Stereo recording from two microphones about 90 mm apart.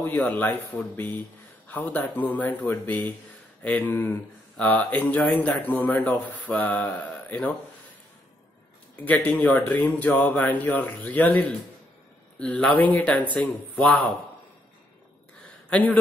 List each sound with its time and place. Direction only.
0.1 s speech: 15° left (ahead or behind)
1.7 s speech: 20° left (ahead or behind)
8.9 s speech: 20° left (ahead or behind)
15.4 s a sound: 15° left (ahead or behind)